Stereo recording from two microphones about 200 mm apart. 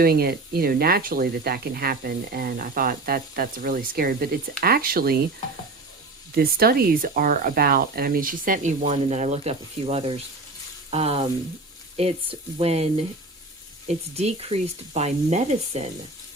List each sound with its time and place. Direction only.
0.0 s speech: 50° right (ahead or behind)
6.3 s speech: 50° right (ahead or behind); by 10.2 s 30° right (ahead or behind)
10.9 s frying: 30° right (ahead or behind)
11.9 s speech: 30° right (ahead or behind)
14.2 s speech: 30° right (ahead or behind)